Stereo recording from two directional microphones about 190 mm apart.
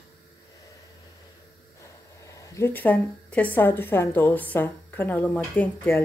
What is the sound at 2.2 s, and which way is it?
A woman's voice, 15° left (ahead or behind).